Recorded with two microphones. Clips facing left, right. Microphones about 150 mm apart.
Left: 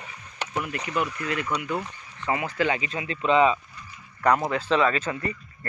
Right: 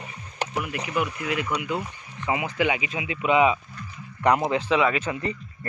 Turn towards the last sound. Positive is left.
turn(degrees=-15)  # may be behind; listen again after turning